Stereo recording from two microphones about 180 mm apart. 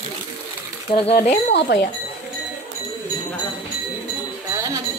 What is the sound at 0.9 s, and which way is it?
Speech, 30° left (ahead or behind).